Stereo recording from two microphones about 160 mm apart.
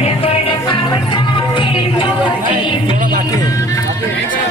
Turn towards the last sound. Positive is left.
turn(degrees=20)  # may be behind; listen again after turning